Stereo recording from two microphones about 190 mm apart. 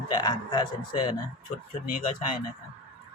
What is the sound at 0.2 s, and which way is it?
Speech, 20° left (ahead or behind).